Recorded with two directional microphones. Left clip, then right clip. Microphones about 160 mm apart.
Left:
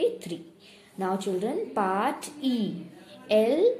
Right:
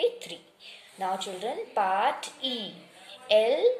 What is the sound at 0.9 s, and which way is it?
A woman's voice, 10° right (ahead or behind).